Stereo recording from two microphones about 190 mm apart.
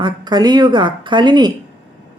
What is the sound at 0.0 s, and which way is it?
A woman's voice, 20° right (ahead or behind).